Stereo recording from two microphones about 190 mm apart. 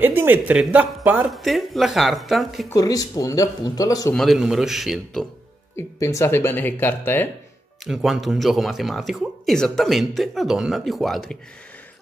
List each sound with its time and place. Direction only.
0.0 s speech: 10° right (ahead or behind)
2.7 s speech: 20° left (ahead or behind)
4.1 s speech: centre (ahead or behind)
5.8 s speech: 15° left (ahead or behind)
7.8 s speech: centre (ahead or behind)